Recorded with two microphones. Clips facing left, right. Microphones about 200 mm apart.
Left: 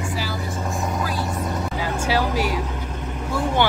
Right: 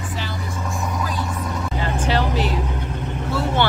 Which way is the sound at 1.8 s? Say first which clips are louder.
Right 1 dB; 10° left (ahead or behind).